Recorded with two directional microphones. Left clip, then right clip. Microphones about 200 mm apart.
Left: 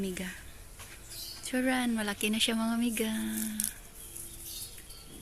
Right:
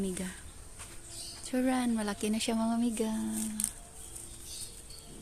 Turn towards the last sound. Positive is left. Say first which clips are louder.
# even
turn(degrees=0)  # may be behind; listen again after turning